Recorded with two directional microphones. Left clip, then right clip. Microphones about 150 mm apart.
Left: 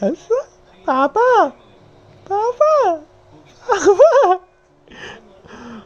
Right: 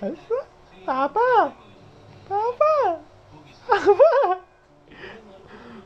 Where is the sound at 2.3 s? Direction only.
75° left (ahead or behind).